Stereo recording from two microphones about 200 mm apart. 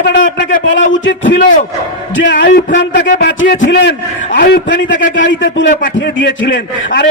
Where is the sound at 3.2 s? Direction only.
65° left (ahead or behind).